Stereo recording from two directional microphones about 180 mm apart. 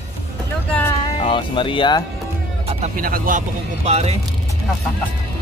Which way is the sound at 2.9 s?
50° right (ahead or behind).